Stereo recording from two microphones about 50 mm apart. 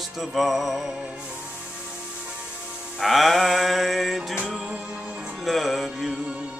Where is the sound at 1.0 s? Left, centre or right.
Right.